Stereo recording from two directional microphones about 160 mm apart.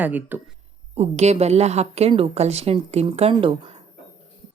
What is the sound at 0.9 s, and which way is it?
A woman's voice, 45° right (ahead or behind).